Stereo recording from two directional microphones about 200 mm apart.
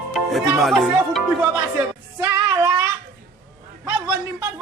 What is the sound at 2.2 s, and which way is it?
Child singing, 15° right (ahead or behind).